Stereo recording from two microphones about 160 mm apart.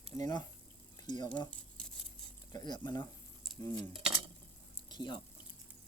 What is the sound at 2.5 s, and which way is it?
Speech, 25° left (ahead or behind).